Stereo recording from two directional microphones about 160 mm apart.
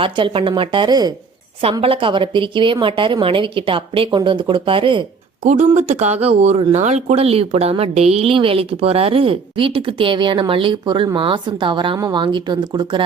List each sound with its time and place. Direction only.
0.0 s speech: 35° right (ahead or behind)
5.5 s speech: 45° right (ahead or behind); by 13.0 s 25° right (ahead or behind)